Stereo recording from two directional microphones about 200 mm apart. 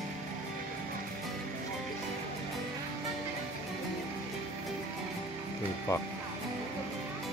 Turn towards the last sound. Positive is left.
turn(degrees=15)  # may be behind; listen again after turning